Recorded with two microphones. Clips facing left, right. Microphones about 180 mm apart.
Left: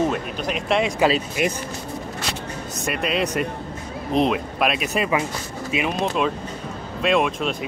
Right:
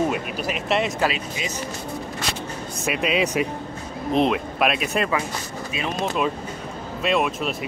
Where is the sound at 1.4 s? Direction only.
60° left (ahead or behind).